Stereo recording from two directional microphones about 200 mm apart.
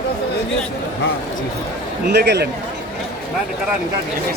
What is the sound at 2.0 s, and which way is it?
Speech, 55° right (ahead or behind).